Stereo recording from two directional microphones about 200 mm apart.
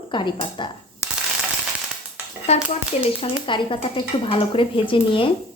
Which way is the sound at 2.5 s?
30° left (ahead or behind).